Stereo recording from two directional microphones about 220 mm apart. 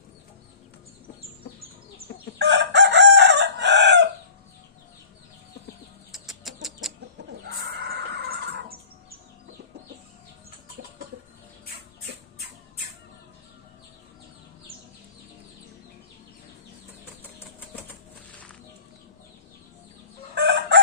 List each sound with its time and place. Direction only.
2.0 s chicken: 50° right (ahead or behind)
6.1 s chicken: centre (ahead or behind)
7.2 s a sound: 50° right (ahead or behind)
20.3 s chicken: 50° right (ahead or behind)